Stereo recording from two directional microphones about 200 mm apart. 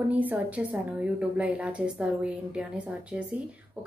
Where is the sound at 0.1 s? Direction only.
10° right (ahead or behind).